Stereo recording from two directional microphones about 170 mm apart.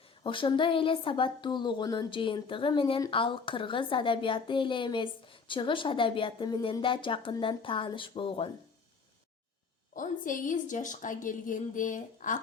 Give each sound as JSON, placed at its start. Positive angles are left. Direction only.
{"t": 0.2, "sound": "a woman's voice", "side_deg": 30}
{"t": 9.9, "sound": "a woman's voice", "side_deg": 50}